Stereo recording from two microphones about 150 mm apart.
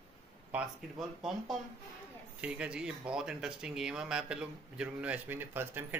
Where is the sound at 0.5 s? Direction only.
5° right (ahead or behind).